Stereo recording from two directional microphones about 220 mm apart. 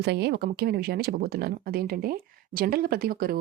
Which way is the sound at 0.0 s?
50° right (ahead or behind).